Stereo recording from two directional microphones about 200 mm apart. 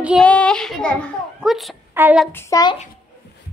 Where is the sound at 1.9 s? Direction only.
10° right (ahead or behind).